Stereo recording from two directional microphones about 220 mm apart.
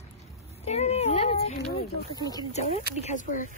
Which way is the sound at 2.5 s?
30° left (ahead or behind).